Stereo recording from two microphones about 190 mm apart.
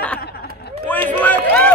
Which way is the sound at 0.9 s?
10° left (ahead or behind).